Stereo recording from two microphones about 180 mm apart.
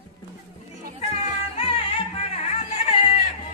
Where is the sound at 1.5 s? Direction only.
30° left (ahead or behind).